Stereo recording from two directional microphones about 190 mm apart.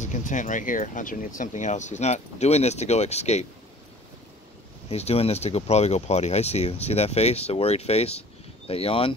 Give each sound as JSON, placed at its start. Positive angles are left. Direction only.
{"t": 0.0, "sound": "speech", "side_deg": 40}
{"t": 4.8, "sound": "speech", "side_deg": 35}